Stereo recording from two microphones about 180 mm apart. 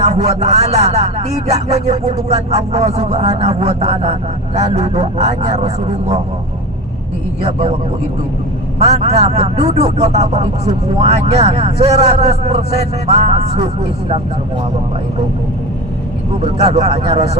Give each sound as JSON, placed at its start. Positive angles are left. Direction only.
{"t": 0.0, "sound": "speech", "side_deg": -40}
{"t": 7.4, "sound": "speech", "side_deg": -35}
{"t": 8.8, "sound": "speech", "side_deg": -35}
{"t": 16.4, "sound": "speech", "side_deg": -35}